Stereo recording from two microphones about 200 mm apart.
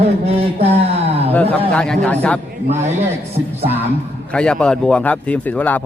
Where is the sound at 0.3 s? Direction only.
30° right (ahead or behind).